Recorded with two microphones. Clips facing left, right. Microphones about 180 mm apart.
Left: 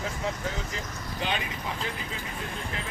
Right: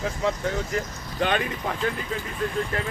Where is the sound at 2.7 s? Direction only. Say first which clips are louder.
Right 8 dB; 50° right (ahead or behind).